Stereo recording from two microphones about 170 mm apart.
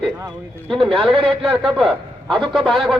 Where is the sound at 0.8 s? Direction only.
35° right (ahead or behind).